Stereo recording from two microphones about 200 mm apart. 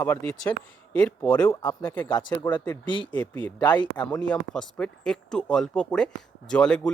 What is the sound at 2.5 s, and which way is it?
Speech, 20° left (ahead or behind).